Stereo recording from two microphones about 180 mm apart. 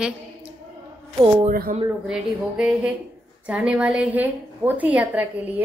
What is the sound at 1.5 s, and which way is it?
Speech, 50° right (ahead or behind).